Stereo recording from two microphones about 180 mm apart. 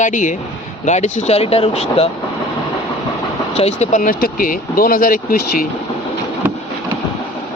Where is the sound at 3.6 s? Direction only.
35° left (ahead or behind).